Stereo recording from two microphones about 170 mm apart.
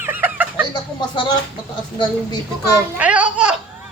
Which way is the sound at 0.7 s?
25° left (ahead or behind).